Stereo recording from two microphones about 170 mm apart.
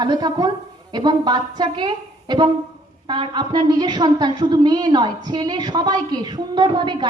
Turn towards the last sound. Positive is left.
turn(degrees=-25)  # may be behind; listen again after turning